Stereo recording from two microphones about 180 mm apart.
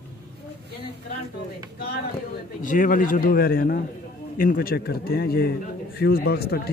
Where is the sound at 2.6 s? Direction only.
50° left (ahead or behind).